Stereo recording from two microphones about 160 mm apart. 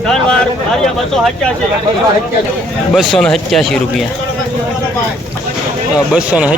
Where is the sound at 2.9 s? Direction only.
Centre (ahead or behind).